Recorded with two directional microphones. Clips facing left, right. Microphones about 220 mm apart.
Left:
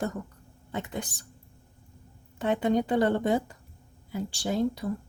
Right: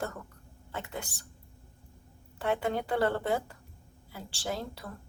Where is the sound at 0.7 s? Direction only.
20° left (ahead or behind).